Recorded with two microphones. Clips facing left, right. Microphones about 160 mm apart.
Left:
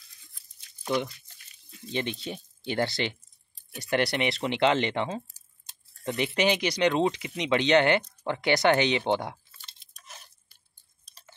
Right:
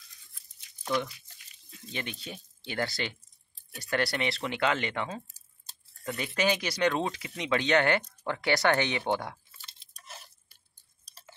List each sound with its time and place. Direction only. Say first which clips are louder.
1.9 s speech: left 7 dB; 25° left (ahead or behind)
9.5 s chewing: even; centre (ahead or behind)